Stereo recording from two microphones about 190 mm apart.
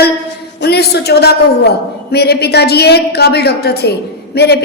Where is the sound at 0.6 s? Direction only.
60° left (ahead or behind).